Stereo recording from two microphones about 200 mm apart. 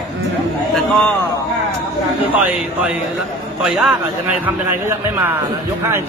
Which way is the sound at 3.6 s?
Centre (ahead or behind).